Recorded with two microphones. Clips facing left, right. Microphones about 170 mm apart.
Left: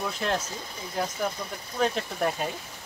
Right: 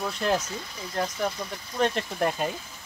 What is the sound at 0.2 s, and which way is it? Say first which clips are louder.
Speech: right 5 dB; centre (ahead or behind).